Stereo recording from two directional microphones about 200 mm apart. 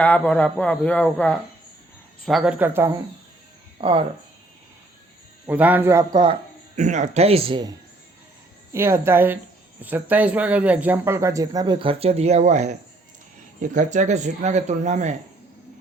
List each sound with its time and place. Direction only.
0.0 s speech: 5° left (ahead or behind); by 2.9 s 10° right (ahead or behind)
3.8 s speech: 25° right (ahead or behind)
5.5 s speech: 10° right (ahead or behind)
6.7 s speech: 35° right (ahead or behind)
8.7 s speech: 10° right (ahead or behind); by 15.1 s 35° right (ahead or behind)